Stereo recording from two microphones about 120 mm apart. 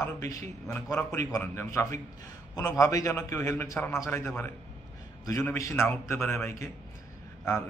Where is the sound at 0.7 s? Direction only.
15° left (ahead or behind).